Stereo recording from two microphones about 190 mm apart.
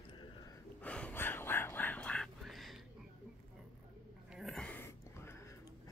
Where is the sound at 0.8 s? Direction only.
5° left (ahead or behind).